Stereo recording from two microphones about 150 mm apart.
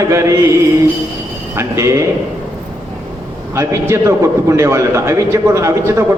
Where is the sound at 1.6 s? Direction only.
20° right (ahead or behind).